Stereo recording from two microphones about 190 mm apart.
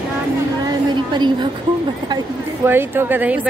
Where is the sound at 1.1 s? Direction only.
25° right (ahead or behind).